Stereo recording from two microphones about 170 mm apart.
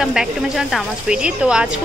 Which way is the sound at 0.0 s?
5° right (ahead or behind).